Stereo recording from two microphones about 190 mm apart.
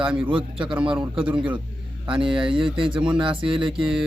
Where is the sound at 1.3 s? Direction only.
25° right (ahead or behind).